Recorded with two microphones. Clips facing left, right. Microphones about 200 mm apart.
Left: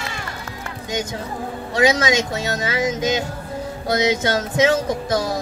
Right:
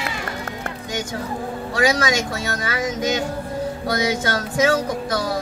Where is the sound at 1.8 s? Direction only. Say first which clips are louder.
Left 2 dB; 25° left (ahead or behind).